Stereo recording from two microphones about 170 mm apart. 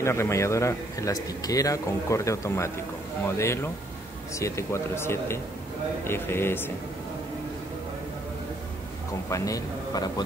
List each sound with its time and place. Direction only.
0.0 s a man's voice: 15° left (ahead or behind)
9.3 s a man's voice: 20° left (ahead or behind)